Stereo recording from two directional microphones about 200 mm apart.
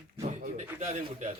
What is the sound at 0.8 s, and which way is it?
Speech, 35° right (ahead or behind).